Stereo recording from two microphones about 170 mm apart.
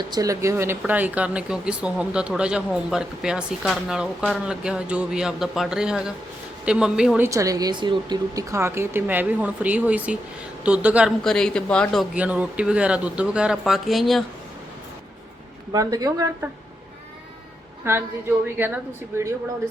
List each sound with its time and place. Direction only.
0.0 s speech: 25° right (ahead or behind); by 7.3 s 5° right (ahead or behind)
7.3 s speech: 20° right (ahead or behind); by 12.0 s 5° left (ahead or behind)
12.1 s speech: 10° right (ahead or behind)
15.7 s speech: 20° right (ahead or behind)
17.8 s speech: 15° right (ahead or behind)